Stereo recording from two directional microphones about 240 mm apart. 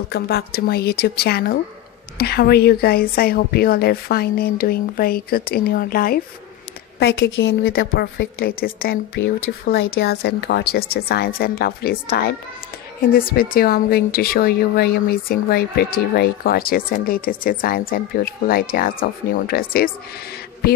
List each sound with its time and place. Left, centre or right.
0.1 s a woman's voice: left
9.4 s speech: left
9.9 s a woman's voice: left